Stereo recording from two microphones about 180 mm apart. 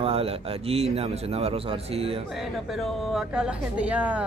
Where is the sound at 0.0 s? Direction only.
30° right (ahead or behind).